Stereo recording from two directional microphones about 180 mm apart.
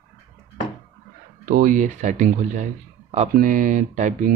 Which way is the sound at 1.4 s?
50° right (ahead or behind).